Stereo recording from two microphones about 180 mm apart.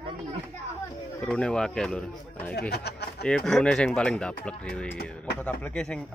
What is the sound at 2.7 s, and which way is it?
Speech, 65° left (ahead or behind).